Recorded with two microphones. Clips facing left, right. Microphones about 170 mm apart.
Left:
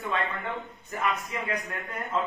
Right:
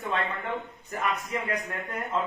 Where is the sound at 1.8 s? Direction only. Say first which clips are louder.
Right 2 dB; 20° right (ahead or behind).